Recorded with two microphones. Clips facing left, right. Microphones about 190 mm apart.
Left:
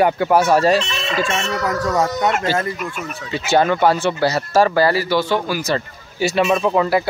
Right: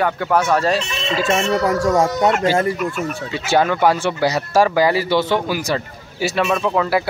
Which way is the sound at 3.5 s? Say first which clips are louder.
Left 1 dB; 10° right (ahead or behind).